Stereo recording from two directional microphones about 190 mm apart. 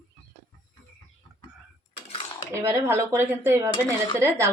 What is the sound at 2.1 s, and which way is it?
Cutlery, 30° left (ahead or behind).